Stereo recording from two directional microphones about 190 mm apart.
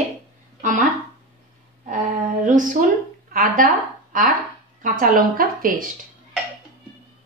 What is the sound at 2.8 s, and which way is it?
Speech, 40° right (ahead or behind).